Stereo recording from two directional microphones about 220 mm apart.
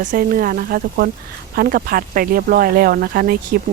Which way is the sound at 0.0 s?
40° right (ahead or behind).